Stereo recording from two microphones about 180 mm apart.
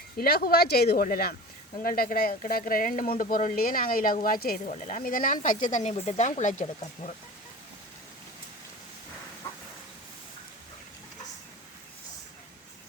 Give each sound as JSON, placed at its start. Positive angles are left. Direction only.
{"t": 0.2, "sound": "a woman's voice", "side_deg": 60}
{"t": 4.6, "sound": "speech", "side_deg": 40}